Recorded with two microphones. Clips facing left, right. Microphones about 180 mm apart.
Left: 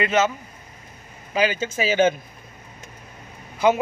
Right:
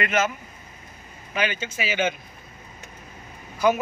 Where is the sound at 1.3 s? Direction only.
35° left (ahead or behind).